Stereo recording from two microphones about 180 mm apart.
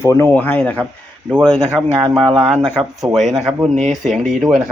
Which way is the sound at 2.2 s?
30° right (ahead or behind).